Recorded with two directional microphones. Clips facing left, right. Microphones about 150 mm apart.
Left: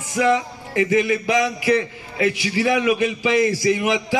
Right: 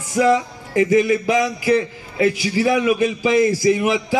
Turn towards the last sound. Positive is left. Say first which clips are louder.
# right 3 dB
turn(degrees=-35)  # may be behind; listen again after turning